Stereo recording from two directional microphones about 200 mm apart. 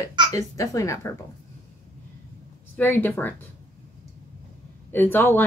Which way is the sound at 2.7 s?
10° left (ahead or behind).